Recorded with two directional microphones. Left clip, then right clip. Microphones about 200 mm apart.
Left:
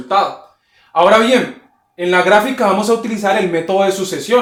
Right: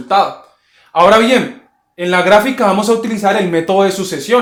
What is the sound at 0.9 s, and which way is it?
Speech, 45° right (ahead or behind).